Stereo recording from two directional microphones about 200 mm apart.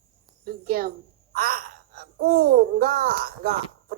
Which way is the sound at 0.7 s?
45° right (ahead or behind).